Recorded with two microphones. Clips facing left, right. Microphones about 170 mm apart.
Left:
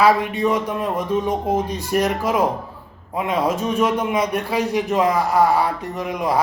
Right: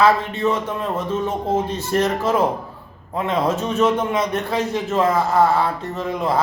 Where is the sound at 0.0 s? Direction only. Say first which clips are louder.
Even; 15° left (ahead or behind).